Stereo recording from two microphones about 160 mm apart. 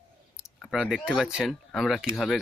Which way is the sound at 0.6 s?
Centre (ahead or behind).